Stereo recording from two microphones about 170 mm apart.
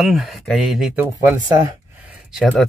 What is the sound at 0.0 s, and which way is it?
Speech, centre (ahead or behind).